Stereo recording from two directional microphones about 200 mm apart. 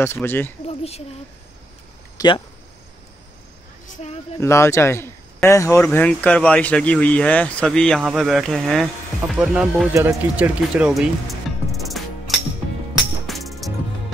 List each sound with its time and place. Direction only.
0.0 s speech: 10° left (ahead or behind)
0.7 s speech: 30° left (ahead or behind)
2.1 s speech: 25° left (ahead or behind)
3.8 s a sound: 35° left (ahead or behind)
4.4 s speech: 15° left (ahead or behind)
13.3 s music: centre (ahead or behind)